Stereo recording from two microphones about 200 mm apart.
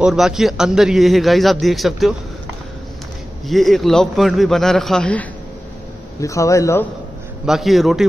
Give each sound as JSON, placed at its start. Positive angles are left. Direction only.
{"t": 0.0, "sound": "a man's voice", "side_deg": 0}
{"t": 3.4, "sound": "a man's voice", "side_deg": 0}
{"t": 6.2, "sound": "speech", "side_deg": 15}
{"t": 7.4, "sound": "a man's voice", "side_deg": 0}